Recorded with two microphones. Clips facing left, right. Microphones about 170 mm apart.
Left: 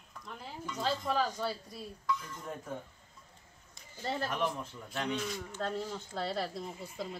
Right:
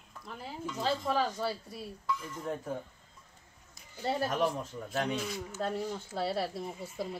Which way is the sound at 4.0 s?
5° right (ahead or behind).